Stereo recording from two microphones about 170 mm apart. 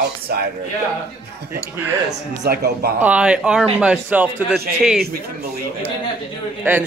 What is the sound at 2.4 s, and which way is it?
Speech, 65° right (ahead or behind).